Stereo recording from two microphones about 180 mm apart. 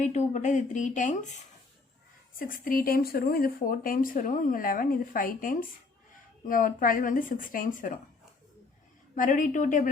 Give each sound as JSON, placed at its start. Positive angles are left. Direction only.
{"t": 0.0, "sound": "speech", "side_deg": 40}
{"t": 2.4, "sound": "speech", "side_deg": 50}
{"t": 9.1, "sound": "speech", "side_deg": 45}